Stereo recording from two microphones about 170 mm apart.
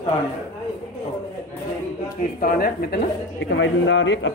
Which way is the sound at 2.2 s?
55° left (ahead or behind).